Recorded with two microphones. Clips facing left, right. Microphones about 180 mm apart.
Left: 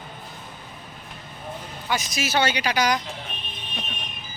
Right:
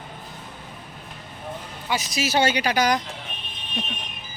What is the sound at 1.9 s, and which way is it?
Speech, 35° right (ahead or behind).